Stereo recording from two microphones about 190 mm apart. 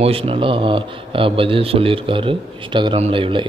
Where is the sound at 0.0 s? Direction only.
30° right (ahead or behind).